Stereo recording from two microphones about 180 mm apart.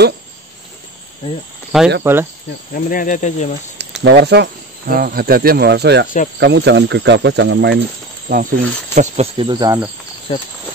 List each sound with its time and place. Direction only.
1.7 s speech: 5° right (ahead or behind)
2.7 s speech: 50° left (ahead or behind)
3.7 s speech: 70° right (ahead or behind)
8.3 s speech: 50° right (ahead or behind); by 9.8 s 25° right (ahead or behind)
10.3 s speech: 30° left (ahead or behind)